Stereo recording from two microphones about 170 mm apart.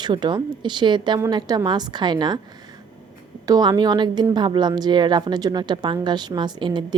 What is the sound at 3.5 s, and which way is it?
A woman's voice, 25° right (ahead or behind).